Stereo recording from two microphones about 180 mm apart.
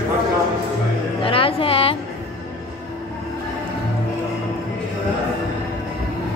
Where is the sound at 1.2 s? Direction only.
30° left (ahead or behind).